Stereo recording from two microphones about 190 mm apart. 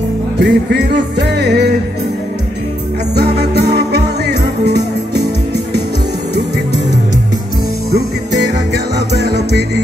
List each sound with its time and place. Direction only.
0.4 s music: 60° right (ahead or behind)
3.2 s music: 60° right (ahead or behind)
7.9 s music: 60° right (ahead or behind)